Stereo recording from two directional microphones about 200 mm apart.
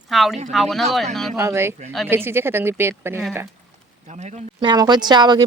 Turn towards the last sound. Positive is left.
turn(degrees=-20)  # may be behind; listen again after turning